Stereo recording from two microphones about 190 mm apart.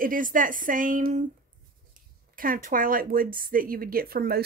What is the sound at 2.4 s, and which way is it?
A woman's voice, 45° right (ahead or behind).